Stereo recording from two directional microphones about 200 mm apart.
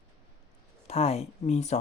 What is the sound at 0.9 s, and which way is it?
Speech, 30° left (ahead or behind).